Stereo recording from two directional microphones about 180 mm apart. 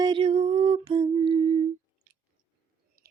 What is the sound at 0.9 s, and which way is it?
Speech, 30° right (ahead or behind).